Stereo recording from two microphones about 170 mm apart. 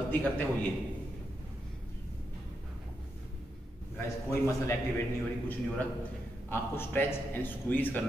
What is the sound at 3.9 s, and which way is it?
Speech, 15° left (ahead or behind).